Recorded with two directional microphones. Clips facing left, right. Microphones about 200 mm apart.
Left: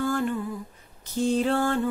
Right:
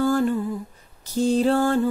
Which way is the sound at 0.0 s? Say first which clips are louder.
Right 5 dB; 35° right (ahead or behind).